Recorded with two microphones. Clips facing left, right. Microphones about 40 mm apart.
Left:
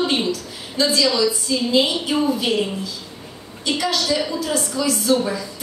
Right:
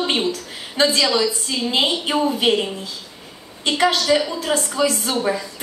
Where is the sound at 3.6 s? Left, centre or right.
Right.